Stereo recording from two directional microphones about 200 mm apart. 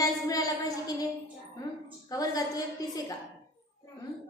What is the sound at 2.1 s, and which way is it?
Speech, 20° left (ahead or behind).